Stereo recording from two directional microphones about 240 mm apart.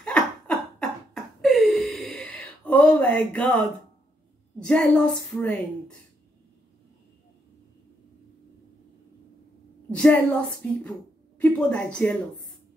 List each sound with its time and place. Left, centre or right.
0.0 s laughter: centre
4.6 s a woman's voice: centre
9.8 s a woman's voice: centre